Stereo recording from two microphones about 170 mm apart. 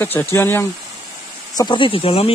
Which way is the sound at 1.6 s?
30° left (ahead or behind).